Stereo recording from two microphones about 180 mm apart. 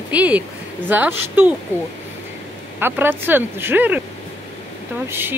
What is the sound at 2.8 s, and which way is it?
Speech, 10° right (ahead or behind).